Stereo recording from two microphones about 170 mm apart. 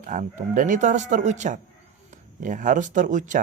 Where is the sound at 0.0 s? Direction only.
50° right (ahead or behind).